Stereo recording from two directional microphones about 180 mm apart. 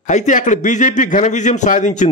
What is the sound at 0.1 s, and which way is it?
A man's voice, 40° left (ahead or behind).